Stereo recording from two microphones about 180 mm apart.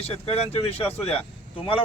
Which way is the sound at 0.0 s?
35° left (ahead or behind).